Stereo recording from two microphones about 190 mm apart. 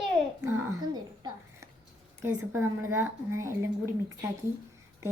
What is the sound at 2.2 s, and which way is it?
Speech, 15° right (ahead or behind).